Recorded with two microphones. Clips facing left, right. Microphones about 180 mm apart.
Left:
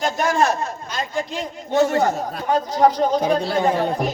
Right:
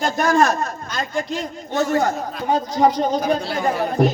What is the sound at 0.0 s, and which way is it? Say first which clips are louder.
Speech: right 2 dB; 25° left (ahead or behind).